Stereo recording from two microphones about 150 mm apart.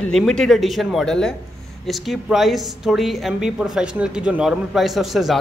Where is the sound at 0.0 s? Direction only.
5° left (ahead or behind).